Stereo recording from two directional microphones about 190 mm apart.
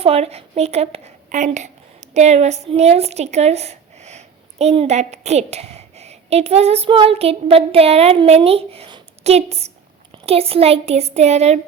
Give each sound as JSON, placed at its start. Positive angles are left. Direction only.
{"t": 0.0, "sound": "a woman's voice", "side_deg": -30}